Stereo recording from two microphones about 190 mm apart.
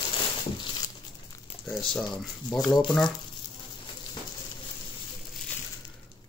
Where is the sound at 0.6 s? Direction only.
25° left (ahead or behind).